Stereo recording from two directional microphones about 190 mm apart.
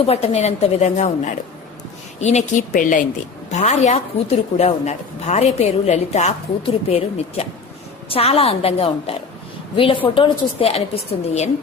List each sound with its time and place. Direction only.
0.0 s a woman's voice: 35° left (ahead or behind)